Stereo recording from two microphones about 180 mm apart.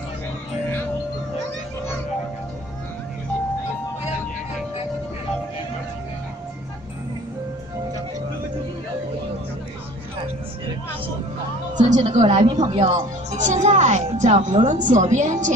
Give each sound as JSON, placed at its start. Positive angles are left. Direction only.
{"t": 11.7, "sound": "music", "side_deg": -40}
{"t": 12.4, "sound": "speech", "side_deg": -30}